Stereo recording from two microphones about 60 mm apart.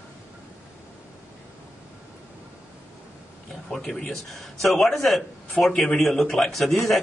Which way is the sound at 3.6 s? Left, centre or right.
Centre.